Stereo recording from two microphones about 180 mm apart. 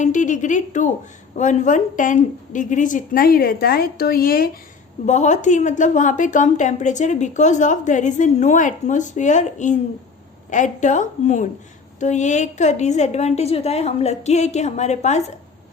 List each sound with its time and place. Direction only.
0.0 s a woman's voice: 45° left (ahead or behind)
5.0 s a woman's voice: 40° left (ahead or behind)